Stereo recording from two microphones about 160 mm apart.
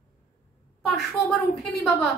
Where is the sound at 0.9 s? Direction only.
Centre (ahead or behind).